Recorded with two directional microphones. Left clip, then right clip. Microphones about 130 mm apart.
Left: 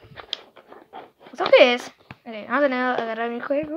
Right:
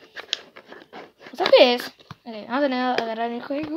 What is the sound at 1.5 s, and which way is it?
A woman's voice, 15° right (ahead or behind).